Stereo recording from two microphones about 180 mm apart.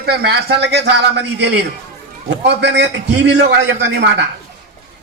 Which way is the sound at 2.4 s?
75° right (ahead or behind).